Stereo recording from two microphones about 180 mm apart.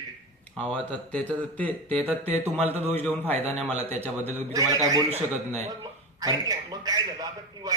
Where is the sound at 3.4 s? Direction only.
35° right (ahead or behind).